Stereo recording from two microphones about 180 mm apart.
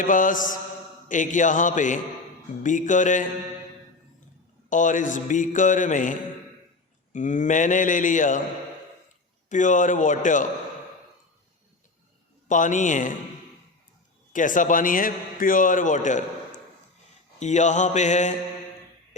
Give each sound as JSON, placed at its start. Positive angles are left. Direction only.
{"t": 0.0, "sound": "a man's voice", "side_deg": 45}
{"t": 4.7, "sound": "a man's voice", "side_deg": 45}
{"t": 9.5, "sound": "a man's voice", "side_deg": 45}
{"t": 12.5, "sound": "a man's voice", "side_deg": 45}
{"t": 14.3, "sound": "a man's voice", "side_deg": 45}
{"t": 17.4, "sound": "mantra", "side_deg": 40}